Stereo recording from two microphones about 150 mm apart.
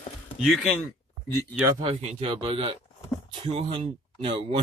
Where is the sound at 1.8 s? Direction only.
40° right (ahead or behind).